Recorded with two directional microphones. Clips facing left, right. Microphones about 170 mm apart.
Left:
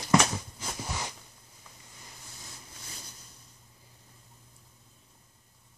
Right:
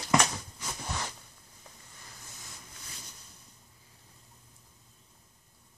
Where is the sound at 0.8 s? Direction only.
5° left (ahead or behind).